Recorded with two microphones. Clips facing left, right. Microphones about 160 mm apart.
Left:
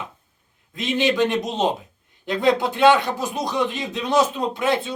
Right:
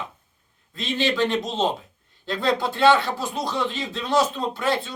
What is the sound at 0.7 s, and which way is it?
A man's voice, 20° left (ahead or behind).